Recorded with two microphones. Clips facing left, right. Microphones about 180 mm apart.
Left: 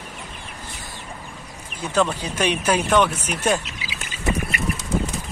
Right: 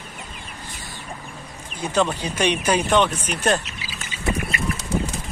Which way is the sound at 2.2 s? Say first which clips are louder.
Even; 5° left (ahead or behind).